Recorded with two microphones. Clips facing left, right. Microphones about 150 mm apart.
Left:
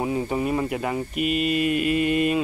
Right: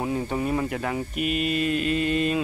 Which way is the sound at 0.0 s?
5° left (ahead or behind).